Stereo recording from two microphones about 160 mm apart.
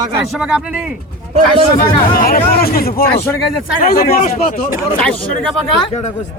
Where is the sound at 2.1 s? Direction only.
65° left (ahead or behind).